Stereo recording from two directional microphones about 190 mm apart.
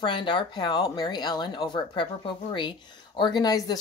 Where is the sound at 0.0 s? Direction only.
25° left (ahead or behind).